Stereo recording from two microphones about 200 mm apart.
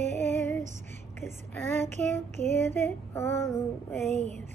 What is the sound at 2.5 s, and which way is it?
Female singing, 10° left (ahead or behind).